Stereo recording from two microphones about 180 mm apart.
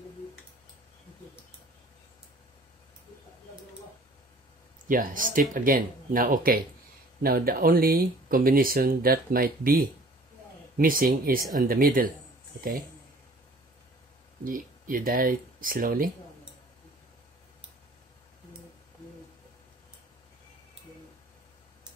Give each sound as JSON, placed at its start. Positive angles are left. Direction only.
{"t": 4.8, "sound": "speech", "side_deg": -50}
{"t": 14.4, "sound": "speech", "side_deg": -50}